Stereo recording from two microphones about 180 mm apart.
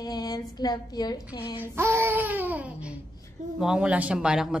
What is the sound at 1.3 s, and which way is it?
Child singing, 20° left (ahead or behind).